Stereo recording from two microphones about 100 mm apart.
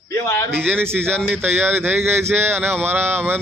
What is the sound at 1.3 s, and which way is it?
A man's voice, 20° right (ahead or behind).